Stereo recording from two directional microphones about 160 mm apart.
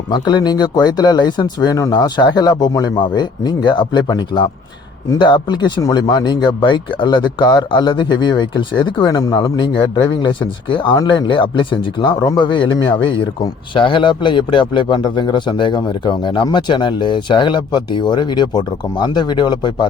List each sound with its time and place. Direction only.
0.1 s speech: 25° left (ahead or behind)
13.7 s speech: 30° left (ahead or behind)